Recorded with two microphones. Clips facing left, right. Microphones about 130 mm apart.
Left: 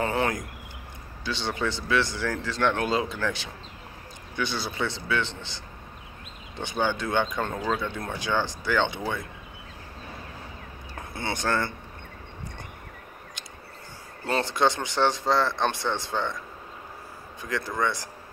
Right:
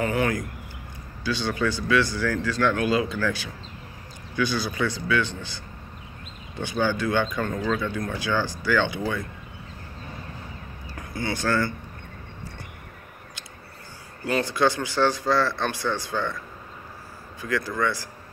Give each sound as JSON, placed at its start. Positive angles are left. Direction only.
{"t": 0.0, "sound": "speech", "side_deg": 30}
{"t": 11.0, "sound": "speech", "side_deg": 25}
{"t": 14.2, "sound": "speech", "side_deg": 25}
{"t": 17.4, "sound": "speech", "side_deg": 25}